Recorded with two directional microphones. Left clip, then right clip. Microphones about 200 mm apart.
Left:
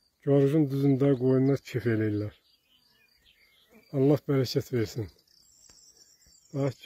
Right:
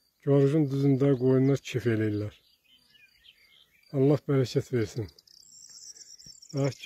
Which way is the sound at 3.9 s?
Centre (ahead or behind).